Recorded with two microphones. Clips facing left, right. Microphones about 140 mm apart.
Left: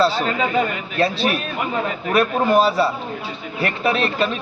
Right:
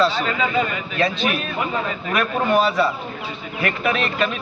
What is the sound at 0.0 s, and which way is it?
A man's voice, 40° left (ahead or behind).